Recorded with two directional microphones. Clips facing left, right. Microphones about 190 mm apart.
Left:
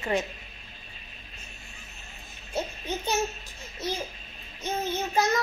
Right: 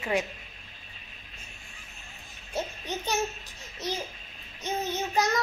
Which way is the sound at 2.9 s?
15° right (ahead or behind).